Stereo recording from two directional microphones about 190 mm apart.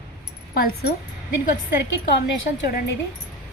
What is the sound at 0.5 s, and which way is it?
Speech, 50° left (ahead or behind).